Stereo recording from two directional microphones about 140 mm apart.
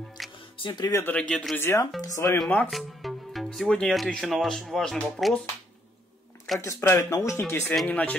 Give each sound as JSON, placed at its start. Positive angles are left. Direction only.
{"t": 0.4, "sound": "music", "side_deg": 35}
{"t": 1.0, "sound": "speech", "side_deg": 10}
{"t": 1.6, "sound": "speech", "side_deg": 15}
{"t": 2.3, "sound": "speech", "side_deg": 0}
{"t": 6.6, "sound": "speech", "side_deg": 20}